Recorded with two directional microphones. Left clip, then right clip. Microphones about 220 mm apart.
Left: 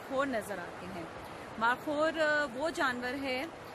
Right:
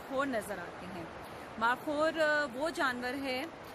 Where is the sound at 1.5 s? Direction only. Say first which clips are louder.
Left 1 dB; 5° right (ahead or behind).